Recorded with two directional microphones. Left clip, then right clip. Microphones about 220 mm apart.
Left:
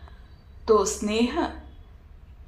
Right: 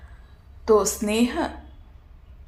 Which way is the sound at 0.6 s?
35° right (ahead or behind).